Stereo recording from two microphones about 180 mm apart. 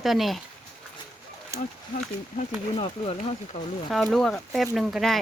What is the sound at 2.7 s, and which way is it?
Speech, 30° left (ahead or behind).